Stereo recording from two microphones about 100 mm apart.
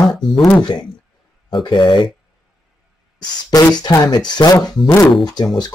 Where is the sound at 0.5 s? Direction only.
45° left (ahead or behind).